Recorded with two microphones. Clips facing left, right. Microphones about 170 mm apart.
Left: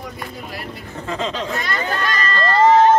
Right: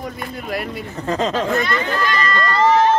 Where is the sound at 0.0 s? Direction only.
65° right (ahead or behind).